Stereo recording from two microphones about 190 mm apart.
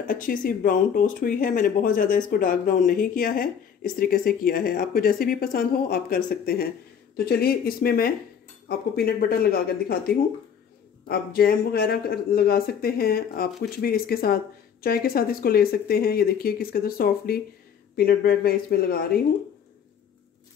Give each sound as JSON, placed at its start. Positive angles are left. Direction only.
{"t": 0.1, "sound": "speech", "side_deg": 45}